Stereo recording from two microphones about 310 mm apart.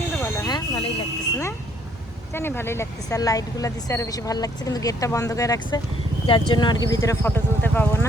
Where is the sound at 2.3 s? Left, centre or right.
Centre.